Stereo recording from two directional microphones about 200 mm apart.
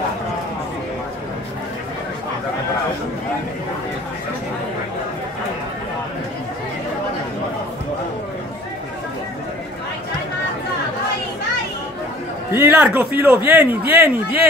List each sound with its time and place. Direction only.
12.4 s a man's voice: 10° right (ahead or behind)